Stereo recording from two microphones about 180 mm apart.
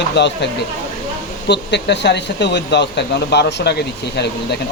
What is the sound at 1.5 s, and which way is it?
Speech, 70° left (ahead or behind).